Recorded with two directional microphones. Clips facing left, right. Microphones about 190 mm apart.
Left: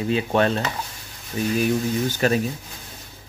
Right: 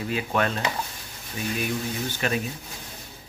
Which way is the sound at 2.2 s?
40° left (ahead or behind).